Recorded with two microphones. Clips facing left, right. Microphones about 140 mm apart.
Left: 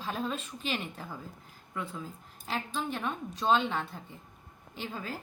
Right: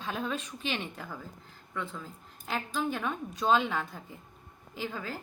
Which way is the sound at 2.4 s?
Centre (ahead or behind).